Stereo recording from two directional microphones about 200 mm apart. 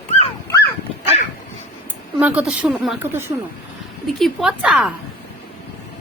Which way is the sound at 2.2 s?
5° right (ahead or behind).